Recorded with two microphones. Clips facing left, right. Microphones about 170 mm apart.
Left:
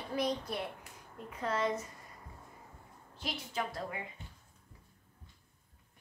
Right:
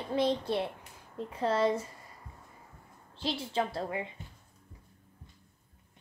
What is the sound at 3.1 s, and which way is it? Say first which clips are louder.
Speech: right 7 dB; 30° right (ahead or behind).